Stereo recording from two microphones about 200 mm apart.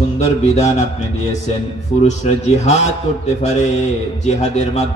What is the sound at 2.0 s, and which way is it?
A man's voice, 35° left (ahead or behind).